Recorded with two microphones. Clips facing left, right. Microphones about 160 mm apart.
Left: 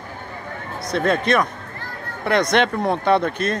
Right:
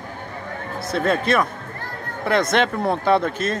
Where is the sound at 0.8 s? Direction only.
5° right (ahead or behind).